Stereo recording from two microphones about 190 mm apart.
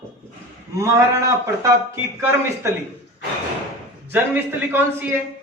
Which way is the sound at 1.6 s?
15° right (ahead or behind).